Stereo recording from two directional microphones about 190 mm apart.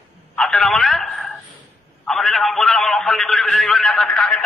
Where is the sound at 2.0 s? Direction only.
Centre (ahead or behind).